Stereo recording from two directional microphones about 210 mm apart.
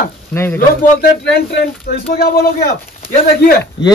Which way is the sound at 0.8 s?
45° left (ahead or behind).